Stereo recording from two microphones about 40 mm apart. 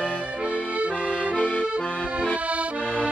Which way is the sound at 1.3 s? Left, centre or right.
Left.